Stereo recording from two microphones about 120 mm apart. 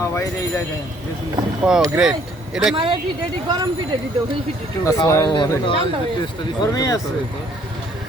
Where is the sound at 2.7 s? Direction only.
50° right (ahead or behind).